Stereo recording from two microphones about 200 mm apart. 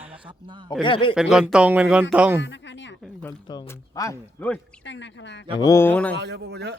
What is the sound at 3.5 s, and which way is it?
Speech, 15° left (ahead or behind).